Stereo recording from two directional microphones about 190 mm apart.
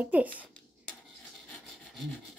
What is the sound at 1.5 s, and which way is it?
Rub, 5° left (ahead or behind).